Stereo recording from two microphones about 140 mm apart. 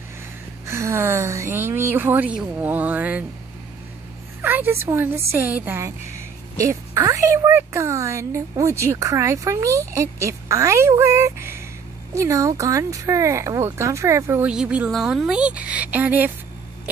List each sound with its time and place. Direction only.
0.7 s a woman's voice: 20° right (ahead or behind)
4.4 s a woman's voice: 15° right (ahead or behind)
14.5 s a woman's voice: 5° right (ahead or behind)